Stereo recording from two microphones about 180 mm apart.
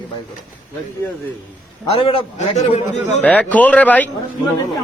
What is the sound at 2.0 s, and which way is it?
Speech, 30° left (ahead or behind).